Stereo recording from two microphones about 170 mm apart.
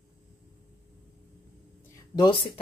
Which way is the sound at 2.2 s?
30° left (ahead or behind).